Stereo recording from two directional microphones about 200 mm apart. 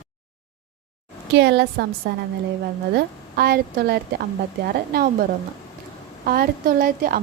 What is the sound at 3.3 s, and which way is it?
A woman's voice, 50° right (ahead or behind).